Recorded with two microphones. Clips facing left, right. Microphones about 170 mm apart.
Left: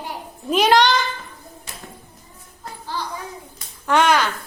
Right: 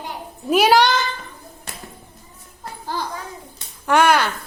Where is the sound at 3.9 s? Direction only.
10° right (ahead or behind).